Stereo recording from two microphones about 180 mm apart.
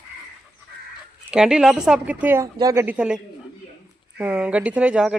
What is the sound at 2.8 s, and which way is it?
Speech, 5° right (ahead or behind).